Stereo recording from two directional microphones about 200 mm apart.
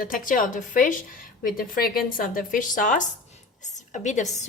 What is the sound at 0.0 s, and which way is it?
A woman's voice, 45° left (ahead or behind).